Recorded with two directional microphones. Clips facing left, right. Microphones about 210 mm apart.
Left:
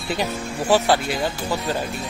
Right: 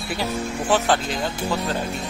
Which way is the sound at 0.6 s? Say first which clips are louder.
Left 3 dB; 10° left (ahead or behind).